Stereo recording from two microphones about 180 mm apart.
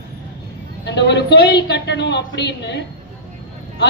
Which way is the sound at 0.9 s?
70° left (ahead or behind).